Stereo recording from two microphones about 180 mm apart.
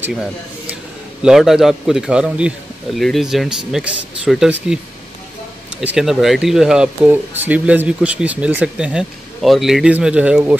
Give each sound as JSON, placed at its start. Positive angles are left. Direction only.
{"t": 0.0, "sound": "speech", "side_deg": 0}
{"t": 5.8, "sound": "speech", "side_deg": 0}